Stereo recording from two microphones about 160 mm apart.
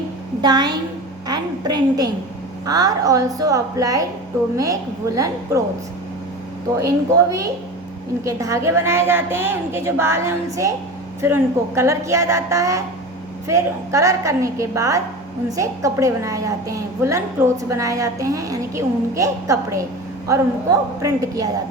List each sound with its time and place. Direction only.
0.4 s a woman's voice: 25° right (ahead or behind)
6.7 s a woman's voice: 20° right (ahead or behind)
21.0 s a woman's voice: 20° right (ahead or behind)